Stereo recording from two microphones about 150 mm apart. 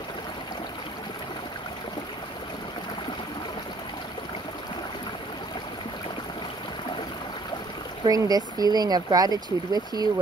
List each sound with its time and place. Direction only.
8.0 s speech: 25° right (ahead or behind)